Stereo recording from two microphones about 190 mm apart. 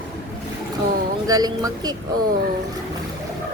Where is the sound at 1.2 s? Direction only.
20° right (ahead or behind).